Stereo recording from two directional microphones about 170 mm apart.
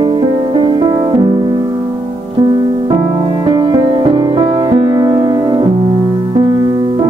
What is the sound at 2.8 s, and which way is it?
Music, 30° right (ahead or behind).